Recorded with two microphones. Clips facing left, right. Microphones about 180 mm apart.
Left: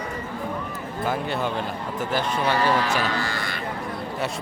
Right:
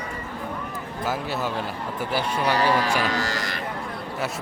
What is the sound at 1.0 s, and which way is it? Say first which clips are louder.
A man's voice: left 2 dB; 5° right (ahead or behind).